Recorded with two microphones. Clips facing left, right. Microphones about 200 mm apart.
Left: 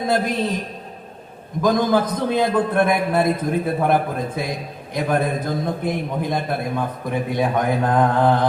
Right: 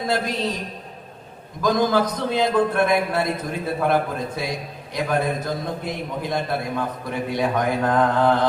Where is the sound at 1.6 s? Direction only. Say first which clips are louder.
Left 2 dB; 55° left (ahead or behind).